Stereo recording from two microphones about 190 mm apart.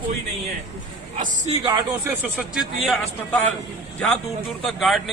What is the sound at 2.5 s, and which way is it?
A man's voice, centre (ahead or behind).